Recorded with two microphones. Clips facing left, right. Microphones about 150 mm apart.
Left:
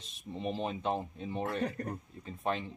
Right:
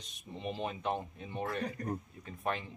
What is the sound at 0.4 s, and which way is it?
Speech, 35° left (ahead or behind).